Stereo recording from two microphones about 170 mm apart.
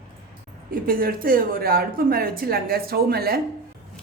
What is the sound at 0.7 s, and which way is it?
A woman's voice, 60° right (ahead or behind).